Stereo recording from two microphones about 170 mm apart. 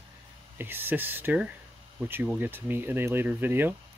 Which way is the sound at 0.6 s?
10° right (ahead or behind).